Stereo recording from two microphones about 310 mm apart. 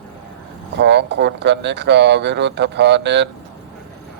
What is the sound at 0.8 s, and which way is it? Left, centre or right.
Speech, right.